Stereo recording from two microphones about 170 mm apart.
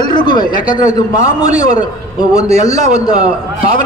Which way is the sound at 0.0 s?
25° left (ahead or behind).